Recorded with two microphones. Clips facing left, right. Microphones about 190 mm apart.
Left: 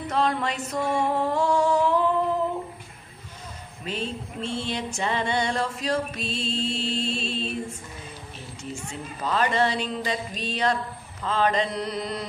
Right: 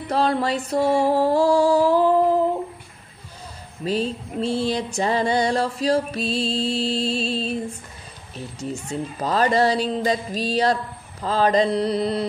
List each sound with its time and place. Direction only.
0.1 s music: 35° right (ahead or behind)
3.8 s music: 35° right (ahead or behind)
9.2 s music: 35° right (ahead or behind)